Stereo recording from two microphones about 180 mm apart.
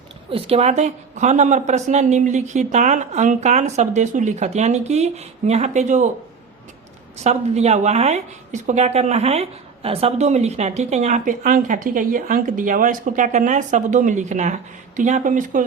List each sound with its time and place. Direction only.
0.3 s a woman's voice: 30° right (ahead or behind)
7.3 s a woman's voice: 40° right (ahead or behind)